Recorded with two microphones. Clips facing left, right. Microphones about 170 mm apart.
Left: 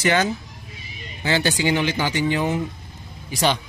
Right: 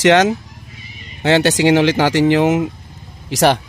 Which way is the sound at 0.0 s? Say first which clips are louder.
Right 8 dB; 80° right.